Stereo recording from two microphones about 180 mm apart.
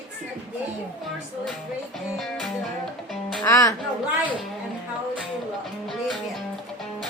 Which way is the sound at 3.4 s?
15° left (ahead or behind).